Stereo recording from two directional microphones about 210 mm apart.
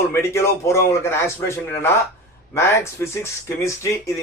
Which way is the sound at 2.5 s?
10° left (ahead or behind).